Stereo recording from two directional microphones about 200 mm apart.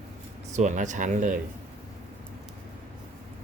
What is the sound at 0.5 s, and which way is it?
Speech, 40° right (ahead or behind).